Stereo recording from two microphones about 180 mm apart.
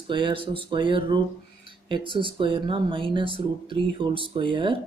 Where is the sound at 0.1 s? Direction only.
30° right (ahead or behind).